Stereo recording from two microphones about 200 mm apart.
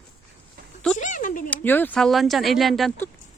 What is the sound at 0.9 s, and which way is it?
Speech, 40° left (ahead or behind).